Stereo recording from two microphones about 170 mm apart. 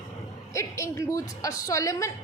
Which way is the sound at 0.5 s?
15° left (ahead or behind).